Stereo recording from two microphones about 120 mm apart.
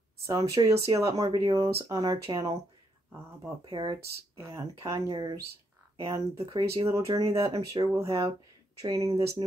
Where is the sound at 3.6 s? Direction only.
40° right (ahead or behind).